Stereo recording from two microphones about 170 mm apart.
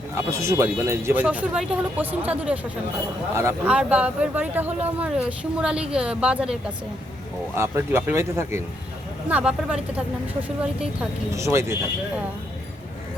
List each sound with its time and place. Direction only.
0.2 s speech: 15° right (ahead or behind)
11.3 s speech: 15° right (ahead or behind)